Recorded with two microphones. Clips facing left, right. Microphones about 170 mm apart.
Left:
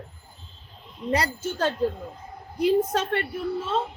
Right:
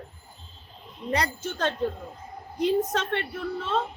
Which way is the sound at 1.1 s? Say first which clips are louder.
Left 2 dB; 10° left (ahead or behind).